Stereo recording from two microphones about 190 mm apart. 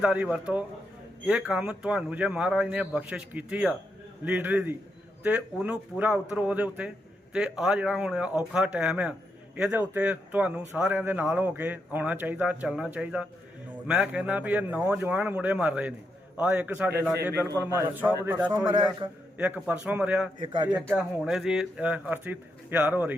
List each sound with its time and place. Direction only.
0.0 s a man's voice: 5° right (ahead or behind)
20.4 s speech: 25° right (ahead or behind)
20.7 s a man's voice: 5° right (ahead or behind)